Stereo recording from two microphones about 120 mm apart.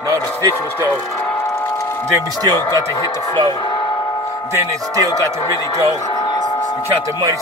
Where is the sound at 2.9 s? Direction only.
25° left (ahead or behind).